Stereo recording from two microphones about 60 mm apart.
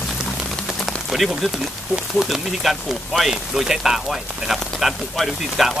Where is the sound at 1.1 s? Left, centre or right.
Centre.